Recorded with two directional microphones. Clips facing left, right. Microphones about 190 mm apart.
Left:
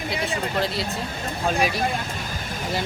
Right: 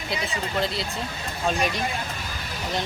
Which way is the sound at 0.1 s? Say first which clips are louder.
Left 1 dB; centre (ahead or behind).